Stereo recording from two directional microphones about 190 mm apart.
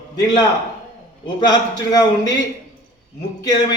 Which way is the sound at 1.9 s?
20° left (ahead or behind).